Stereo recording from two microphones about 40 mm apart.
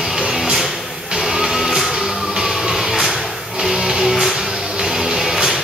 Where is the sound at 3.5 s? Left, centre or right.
Centre.